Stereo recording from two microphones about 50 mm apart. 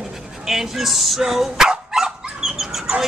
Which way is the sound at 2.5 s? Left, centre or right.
Centre.